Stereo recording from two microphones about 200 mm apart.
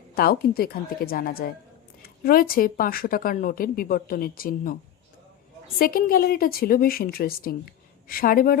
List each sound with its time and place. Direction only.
0.1 s a woman's voice: 50° left (ahead or behind)
5.8 s a woman's voice: 45° left (ahead or behind)